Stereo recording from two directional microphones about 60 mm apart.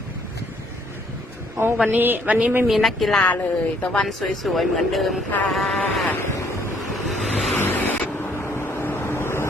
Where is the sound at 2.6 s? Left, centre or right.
Centre.